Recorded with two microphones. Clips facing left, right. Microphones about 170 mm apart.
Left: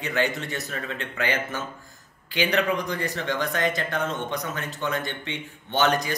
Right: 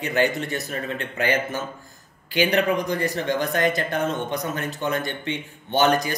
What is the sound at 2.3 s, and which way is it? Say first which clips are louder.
Speech: right 3 dB; 10° right (ahead or behind).